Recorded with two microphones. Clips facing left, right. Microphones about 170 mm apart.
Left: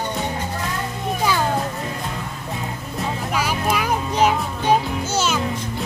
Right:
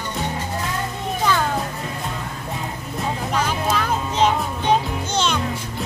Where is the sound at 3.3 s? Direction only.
10° left (ahead or behind).